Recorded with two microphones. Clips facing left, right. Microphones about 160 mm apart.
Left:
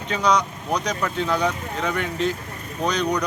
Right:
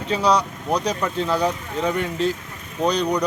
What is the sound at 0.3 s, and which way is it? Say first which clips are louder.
Speech: right 1 dB; 30° right (ahead or behind).